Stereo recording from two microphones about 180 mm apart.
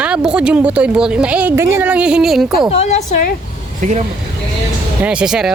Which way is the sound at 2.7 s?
35° left (ahead or behind).